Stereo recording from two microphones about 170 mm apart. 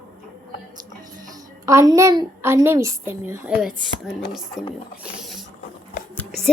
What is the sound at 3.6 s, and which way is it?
Speech, centre (ahead or behind).